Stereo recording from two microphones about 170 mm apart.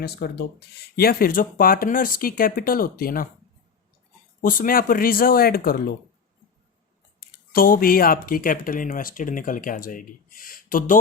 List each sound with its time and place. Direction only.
0.0 s speech: 70° left (ahead or behind)
4.4 s speech: 55° left (ahead or behind)
7.2 s speech: 60° left (ahead or behind)